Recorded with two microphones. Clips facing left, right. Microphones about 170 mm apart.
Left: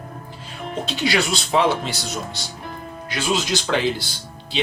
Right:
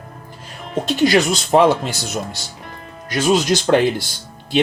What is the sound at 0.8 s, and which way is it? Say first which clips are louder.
Speech: right 7 dB; 45° right (ahead or behind).